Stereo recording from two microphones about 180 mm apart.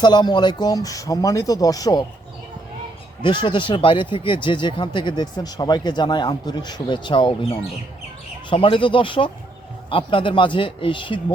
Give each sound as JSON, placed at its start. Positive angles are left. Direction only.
{"t": 0.0, "sound": "speech", "side_deg": 25}
{"t": 3.2, "sound": "speech", "side_deg": 25}